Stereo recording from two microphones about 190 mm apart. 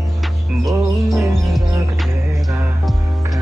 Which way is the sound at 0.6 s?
Centre (ahead or behind).